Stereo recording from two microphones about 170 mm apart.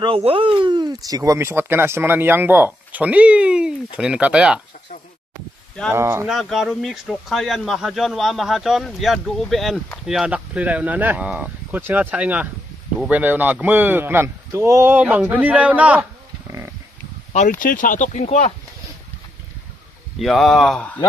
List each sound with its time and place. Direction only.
0.0 s speech: 35° right (ahead or behind); by 4.6 s 5° right (ahead or behind)
5.9 s speech: 15° right (ahead or behind)
6.2 s speech: centre (ahead or behind)
17.3 s speech: 45° left (ahead or behind)
20.2 s speech: centre (ahead or behind)